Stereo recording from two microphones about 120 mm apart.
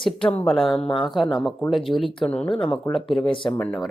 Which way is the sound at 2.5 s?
45° left (ahead or behind).